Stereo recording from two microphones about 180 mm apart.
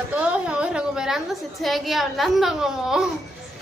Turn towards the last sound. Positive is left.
turn(degrees=0)  # may be behind; listen again after turning